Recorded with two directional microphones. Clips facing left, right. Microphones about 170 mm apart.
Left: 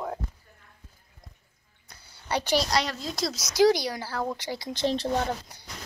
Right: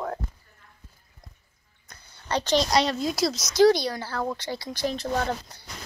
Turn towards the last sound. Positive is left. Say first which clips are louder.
# right 1 dB
turn(degrees=15)  # may be behind; listen again after turning